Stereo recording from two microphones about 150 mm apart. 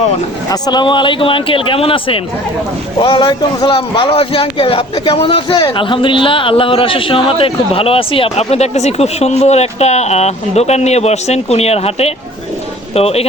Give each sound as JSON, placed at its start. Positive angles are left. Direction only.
{"t": 0.5, "sound": "a man's voice", "side_deg": 25}